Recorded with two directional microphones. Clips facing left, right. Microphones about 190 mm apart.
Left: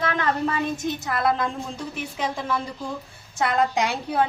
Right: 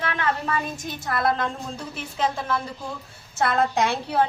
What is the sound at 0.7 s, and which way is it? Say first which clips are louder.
A woman's voice: left 2 dB; 20° left (ahead or behind).